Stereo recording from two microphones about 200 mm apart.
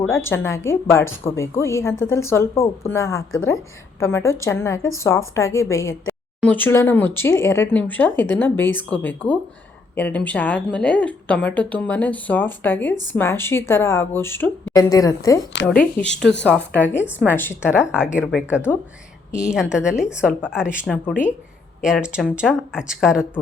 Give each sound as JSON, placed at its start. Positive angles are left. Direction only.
{"t": 0.3, "sound": "a woman's voice", "side_deg": 15}
{"t": 3.3, "sound": "a woman's voice", "side_deg": 85}
{"t": 4.0, "sound": "a woman's voice", "side_deg": 15}
{"t": 16.0, "sound": "a woman's voice", "side_deg": 5}
{"t": 17.6, "sound": "speech", "side_deg": -5}